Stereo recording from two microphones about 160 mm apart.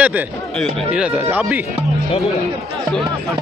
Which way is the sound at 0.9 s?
10° right (ahead or behind).